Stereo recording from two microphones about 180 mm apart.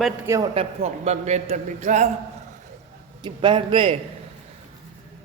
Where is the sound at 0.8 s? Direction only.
40° right (ahead or behind).